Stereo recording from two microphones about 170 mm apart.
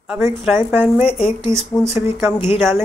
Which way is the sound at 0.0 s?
5° right (ahead or behind).